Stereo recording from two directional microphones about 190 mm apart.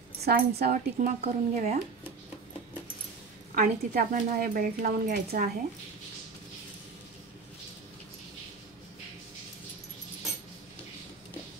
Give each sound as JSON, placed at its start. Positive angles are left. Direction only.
{"t": 0.2, "sound": "a woman's voice", "side_deg": -55}
{"t": 3.5, "sound": "a woman's voice", "side_deg": -45}